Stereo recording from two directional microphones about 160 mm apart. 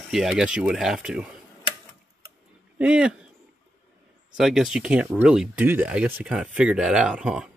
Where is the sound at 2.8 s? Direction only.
5° right (ahead or behind).